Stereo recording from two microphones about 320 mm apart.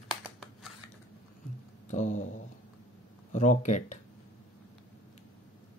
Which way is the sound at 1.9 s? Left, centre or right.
Left.